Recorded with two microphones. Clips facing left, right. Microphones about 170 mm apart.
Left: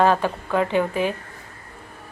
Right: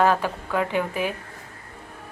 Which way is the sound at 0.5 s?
10° right (ahead or behind).